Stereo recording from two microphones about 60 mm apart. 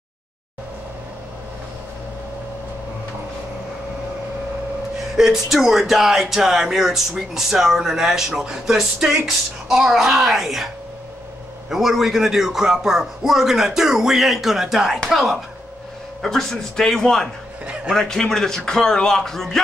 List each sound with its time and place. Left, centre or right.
5.1 s speech: centre
11.7 s a man's voice: centre